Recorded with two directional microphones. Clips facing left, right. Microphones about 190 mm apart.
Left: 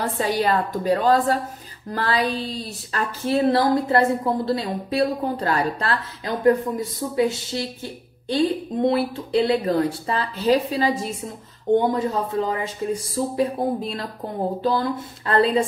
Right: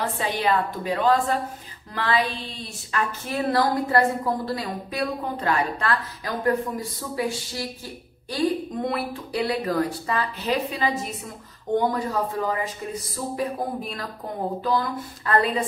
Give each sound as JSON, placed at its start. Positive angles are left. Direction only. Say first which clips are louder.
{"t": 0.2, "sound": "a woman's voice", "louder": "left 3 dB", "side_deg": 40}